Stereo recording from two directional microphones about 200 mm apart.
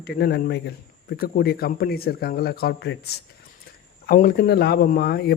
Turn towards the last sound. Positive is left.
turn(degrees=50)  # may be behind; listen again after turning